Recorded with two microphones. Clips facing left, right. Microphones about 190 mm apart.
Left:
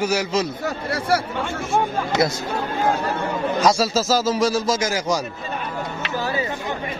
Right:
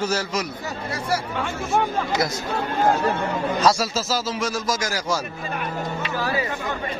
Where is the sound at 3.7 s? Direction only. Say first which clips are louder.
Left 5 dB; 40° left (ahead or behind); by 5.1 s 20° left (ahead or behind).